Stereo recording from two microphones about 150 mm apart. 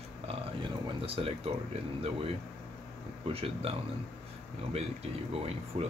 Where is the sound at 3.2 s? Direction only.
40° right (ahead or behind).